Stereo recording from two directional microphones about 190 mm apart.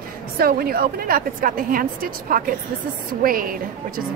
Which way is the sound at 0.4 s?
50° right (ahead or behind).